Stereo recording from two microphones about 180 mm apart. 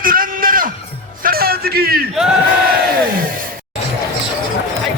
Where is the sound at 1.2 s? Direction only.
55° right (ahead or behind).